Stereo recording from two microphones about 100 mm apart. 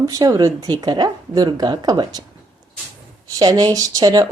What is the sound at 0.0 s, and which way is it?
Mantra, 35° right (ahead or behind).